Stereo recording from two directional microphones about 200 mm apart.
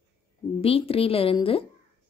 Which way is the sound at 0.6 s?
30° left (ahead or behind).